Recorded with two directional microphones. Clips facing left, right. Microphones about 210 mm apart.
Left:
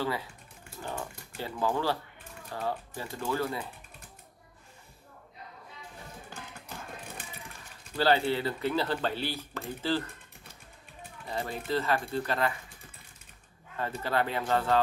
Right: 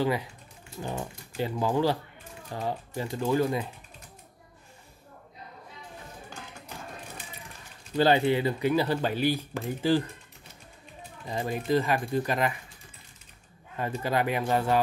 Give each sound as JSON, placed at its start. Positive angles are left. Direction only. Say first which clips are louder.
{"t": 0.0, "sound": "speech", "louder": "right 5 dB", "side_deg": -15}
{"t": 7.9, "sound": "speech", "louder": "right 4 dB", "side_deg": -20}
{"t": 11.2, "sound": "speech", "louder": "right 5 dB", "side_deg": -15}
{"t": 13.7, "sound": "speech", "louder": "right 2 dB", "side_deg": -15}